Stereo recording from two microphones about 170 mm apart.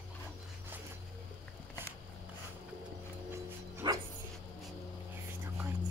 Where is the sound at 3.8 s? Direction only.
25° right (ahead or behind).